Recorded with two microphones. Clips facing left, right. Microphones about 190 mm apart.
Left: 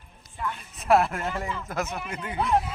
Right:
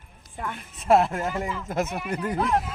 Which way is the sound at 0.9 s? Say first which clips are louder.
Right 2 dB; 25° right (ahead or behind).